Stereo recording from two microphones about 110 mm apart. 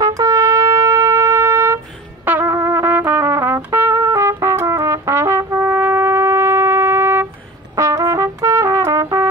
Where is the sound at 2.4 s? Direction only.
25° right (ahead or behind).